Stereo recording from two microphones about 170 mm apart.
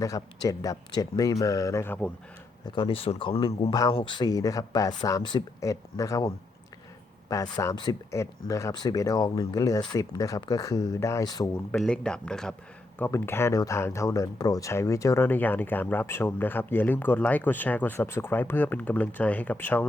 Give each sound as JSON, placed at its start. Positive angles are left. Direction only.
{"t": 0.0, "sound": "speech", "side_deg": 20}
{"t": 2.6, "sound": "speech", "side_deg": 30}
{"t": 11.7, "sound": "speech", "side_deg": 5}